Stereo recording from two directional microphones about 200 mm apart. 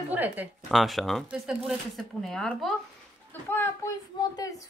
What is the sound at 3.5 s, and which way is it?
Speech, 15° left (ahead or behind).